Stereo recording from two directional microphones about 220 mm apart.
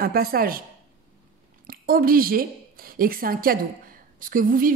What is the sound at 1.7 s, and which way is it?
A woman's voice, 40° right (ahead or behind).